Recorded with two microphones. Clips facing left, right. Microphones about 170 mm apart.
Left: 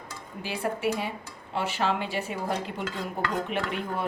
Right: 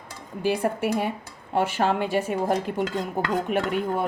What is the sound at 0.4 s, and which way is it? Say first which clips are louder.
A woman's voice: right 5 dB; 50° right (ahead or behind).